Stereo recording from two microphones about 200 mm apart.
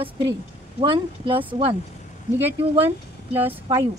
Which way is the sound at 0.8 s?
25° right (ahead or behind).